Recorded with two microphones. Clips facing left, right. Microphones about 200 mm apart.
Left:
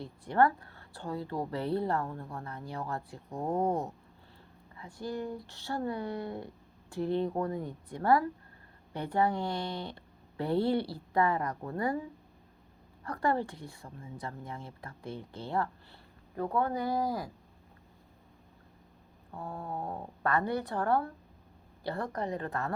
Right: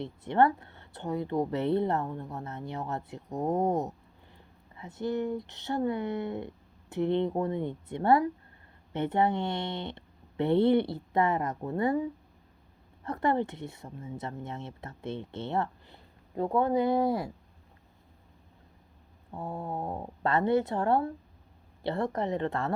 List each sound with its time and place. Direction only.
0.0 s a woman's voice: 25° right (ahead or behind)
13.1 s a woman's voice: 25° right (ahead or behind)
19.3 s a woman's voice: 25° right (ahead or behind)